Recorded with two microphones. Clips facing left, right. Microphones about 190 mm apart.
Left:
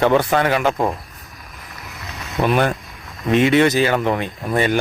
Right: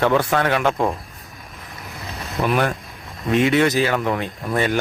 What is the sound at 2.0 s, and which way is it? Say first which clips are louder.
Boat: right 2 dB; 30° right (ahead or behind).